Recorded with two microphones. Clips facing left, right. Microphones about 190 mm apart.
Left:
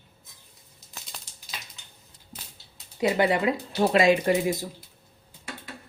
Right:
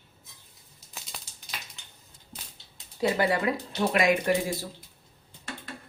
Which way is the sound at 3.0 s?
20° left (ahead or behind).